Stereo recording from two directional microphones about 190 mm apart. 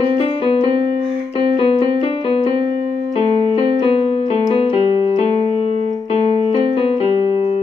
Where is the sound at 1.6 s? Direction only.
30° left (ahead or behind).